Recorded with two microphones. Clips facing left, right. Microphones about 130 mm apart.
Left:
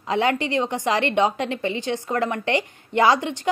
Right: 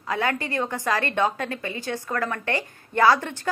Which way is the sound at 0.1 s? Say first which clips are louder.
Left 5 dB; 20° left (ahead or behind).